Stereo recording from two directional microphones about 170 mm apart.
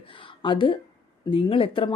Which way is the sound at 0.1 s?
30° left (ahead or behind).